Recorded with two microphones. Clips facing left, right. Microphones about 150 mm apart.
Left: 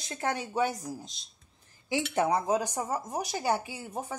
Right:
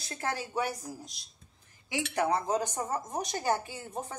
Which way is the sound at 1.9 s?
25° left (ahead or behind).